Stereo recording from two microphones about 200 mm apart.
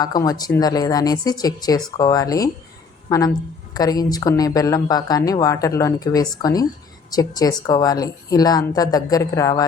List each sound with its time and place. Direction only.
0.0 s a woman's voice: 20° left (ahead or behind)